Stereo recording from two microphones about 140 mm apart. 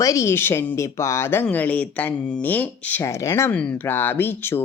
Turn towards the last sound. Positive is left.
turn(degrees=15)  # may be behind; listen again after turning